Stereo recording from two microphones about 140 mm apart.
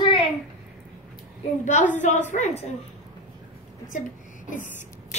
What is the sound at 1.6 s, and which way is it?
A woman's voice, 60° left (ahead or behind).